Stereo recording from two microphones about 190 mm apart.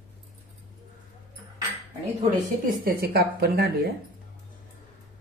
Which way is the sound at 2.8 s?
50° right (ahead or behind).